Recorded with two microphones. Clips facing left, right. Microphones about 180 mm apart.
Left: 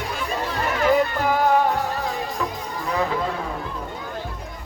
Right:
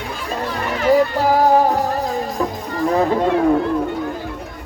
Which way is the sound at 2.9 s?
40° right (ahead or behind).